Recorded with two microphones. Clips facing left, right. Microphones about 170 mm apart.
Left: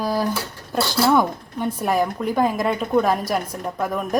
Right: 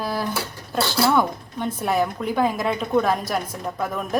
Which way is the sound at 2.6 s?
5° left (ahead or behind).